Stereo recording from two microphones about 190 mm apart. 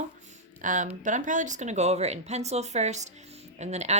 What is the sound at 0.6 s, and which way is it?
Speech, 40° right (ahead or behind).